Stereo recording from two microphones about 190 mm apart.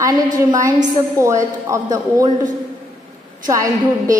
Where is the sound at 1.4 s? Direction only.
15° right (ahead or behind).